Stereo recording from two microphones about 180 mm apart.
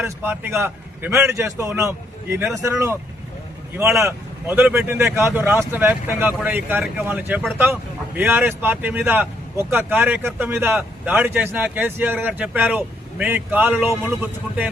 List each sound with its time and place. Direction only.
0.0 s speech: 10° right (ahead or behind)